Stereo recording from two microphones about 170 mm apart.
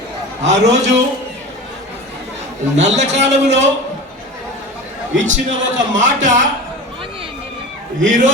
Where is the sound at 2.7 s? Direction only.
45° right (ahead or behind).